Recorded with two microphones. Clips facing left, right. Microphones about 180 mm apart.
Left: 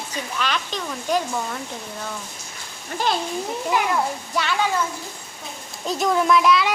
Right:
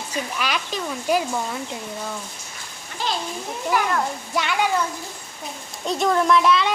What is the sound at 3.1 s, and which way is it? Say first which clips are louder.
Speech: left 4 dB; 55° left (ahead or behind).